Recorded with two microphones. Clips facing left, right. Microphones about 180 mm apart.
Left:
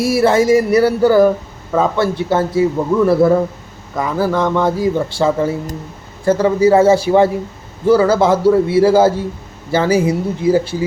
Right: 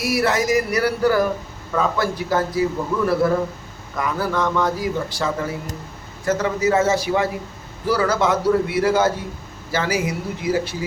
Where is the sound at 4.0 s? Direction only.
30° left (ahead or behind).